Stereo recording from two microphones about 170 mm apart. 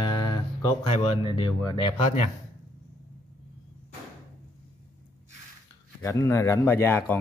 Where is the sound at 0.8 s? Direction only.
35° left (ahead or behind).